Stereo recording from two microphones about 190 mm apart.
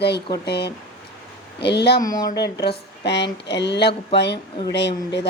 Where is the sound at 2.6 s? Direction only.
60° left (ahead or behind).